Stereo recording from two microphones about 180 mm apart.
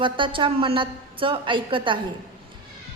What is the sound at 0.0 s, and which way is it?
A woman's voice, 30° right (ahead or behind).